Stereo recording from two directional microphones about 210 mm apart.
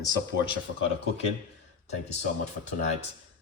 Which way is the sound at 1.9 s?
35° left (ahead or behind).